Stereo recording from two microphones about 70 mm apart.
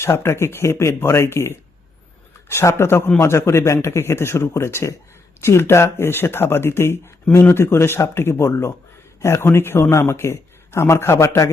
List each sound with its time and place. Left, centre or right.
0.0 s speech: left